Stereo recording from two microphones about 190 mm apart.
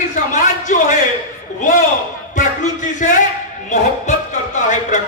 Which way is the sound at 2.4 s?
40° left (ahead or behind).